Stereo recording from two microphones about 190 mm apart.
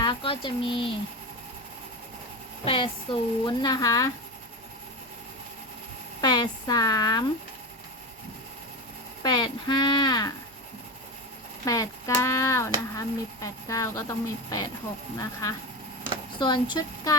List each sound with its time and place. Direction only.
0.0 s speech: 25° left (ahead or behind)
2.6 s a woman's voice: 25° left (ahead or behind)
6.2 s a woman's voice: 20° left (ahead or behind)
9.2 s a woman's voice: 20° left (ahead or behind)
11.6 s a woman's voice: 15° left (ahead or behind)